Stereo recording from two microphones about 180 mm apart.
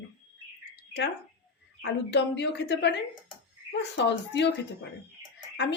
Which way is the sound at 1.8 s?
75° left (ahead or behind).